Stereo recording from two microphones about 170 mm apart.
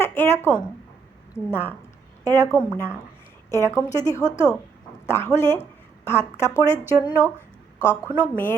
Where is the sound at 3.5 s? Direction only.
15° left (ahead or behind).